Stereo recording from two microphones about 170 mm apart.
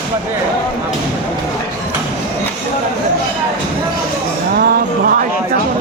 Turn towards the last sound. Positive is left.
turn(degrees=-65)  # may be behind; listen again after turning